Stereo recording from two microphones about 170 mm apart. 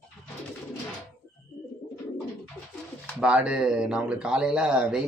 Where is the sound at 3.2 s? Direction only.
5° right (ahead or behind).